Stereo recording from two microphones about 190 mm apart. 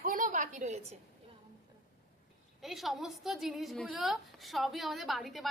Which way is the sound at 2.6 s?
Centre (ahead or behind).